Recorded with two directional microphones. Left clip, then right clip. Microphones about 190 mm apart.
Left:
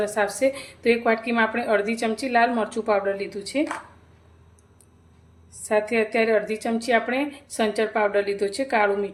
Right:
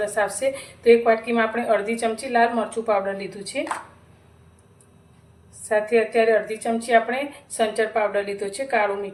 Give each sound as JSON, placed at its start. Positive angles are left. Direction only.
{"t": 0.0, "sound": "a woman's voice", "side_deg": 50}
{"t": 5.6, "sound": "a woman's voice", "side_deg": 60}